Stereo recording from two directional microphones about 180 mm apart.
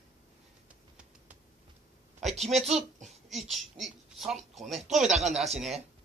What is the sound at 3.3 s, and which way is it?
Speech, centre (ahead or behind).